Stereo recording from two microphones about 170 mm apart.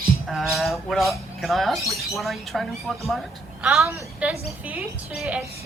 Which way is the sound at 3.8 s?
15° right (ahead or behind).